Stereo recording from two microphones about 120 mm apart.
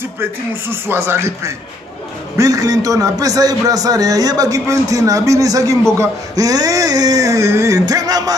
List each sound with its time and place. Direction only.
0.7 s a man's voice: 20° right (ahead or behind)